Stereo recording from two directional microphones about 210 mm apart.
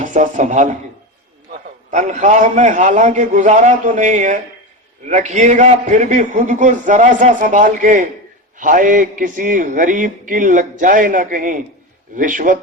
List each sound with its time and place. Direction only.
0.0 s a man's voice: 35° right (ahead or behind)
1.9 s a man's voice: 35° right (ahead or behind)